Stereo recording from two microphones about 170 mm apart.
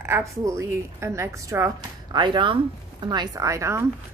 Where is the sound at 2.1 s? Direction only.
25° right (ahead or behind).